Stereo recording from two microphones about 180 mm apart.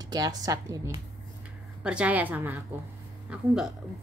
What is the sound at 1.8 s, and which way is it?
A woman's voice, 5° right (ahead or behind).